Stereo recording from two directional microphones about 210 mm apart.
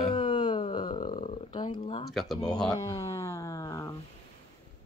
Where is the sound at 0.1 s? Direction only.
25° left (ahead or behind).